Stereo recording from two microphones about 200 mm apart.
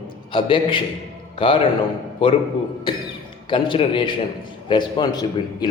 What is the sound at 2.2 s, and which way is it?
Speech, 25° left (ahead or behind).